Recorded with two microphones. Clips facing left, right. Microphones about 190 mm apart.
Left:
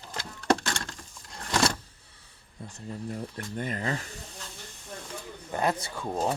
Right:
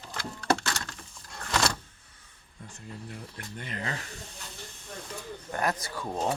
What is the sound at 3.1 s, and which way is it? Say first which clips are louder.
Speech: left 7 dB; 40° left (ahead or behind).